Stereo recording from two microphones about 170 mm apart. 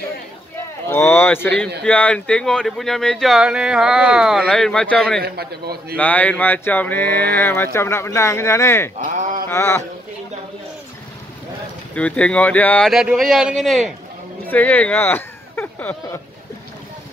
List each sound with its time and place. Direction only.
0.8 s speech: 15° left (ahead or behind)
5.2 s a man's voice: 65° right (ahead or behind)
5.9 s speech: 10° left (ahead or behind)
9.0 s a sound: 45° right (ahead or behind)
9.5 s speech: 15° left (ahead or behind)
11.9 s speech: 5° left (ahead or behind)